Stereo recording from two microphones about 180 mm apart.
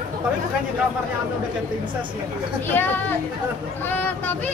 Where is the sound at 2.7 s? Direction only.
10° left (ahead or behind).